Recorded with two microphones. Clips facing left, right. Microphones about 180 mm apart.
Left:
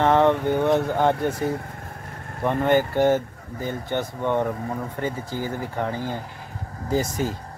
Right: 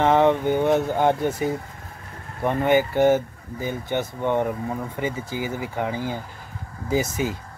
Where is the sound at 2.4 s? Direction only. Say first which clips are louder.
Even; 10° right (ahead or behind).